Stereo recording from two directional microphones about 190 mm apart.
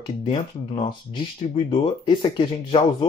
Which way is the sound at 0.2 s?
25° left (ahead or behind).